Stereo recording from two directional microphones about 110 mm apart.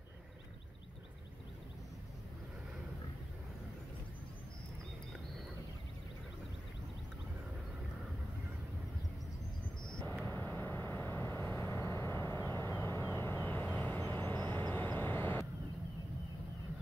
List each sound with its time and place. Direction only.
10.2 s vehicle: 15° left (ahead or behind)